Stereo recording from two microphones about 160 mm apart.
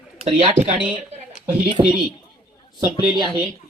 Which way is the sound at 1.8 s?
30° right (ahead or behind).